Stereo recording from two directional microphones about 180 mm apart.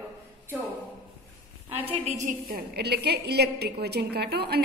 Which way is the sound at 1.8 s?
40° right (ahead or behind).